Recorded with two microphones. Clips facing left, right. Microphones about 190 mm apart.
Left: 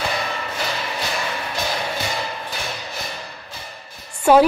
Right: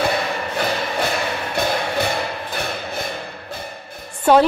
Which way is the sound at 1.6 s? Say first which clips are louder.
Right 6 dB; 60° right (ahead or behind).